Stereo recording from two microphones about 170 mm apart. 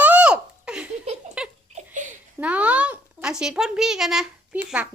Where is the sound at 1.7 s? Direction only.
45° right (ahead or behind).